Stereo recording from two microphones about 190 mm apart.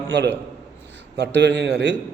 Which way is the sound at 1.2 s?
65° right (ahead or behind).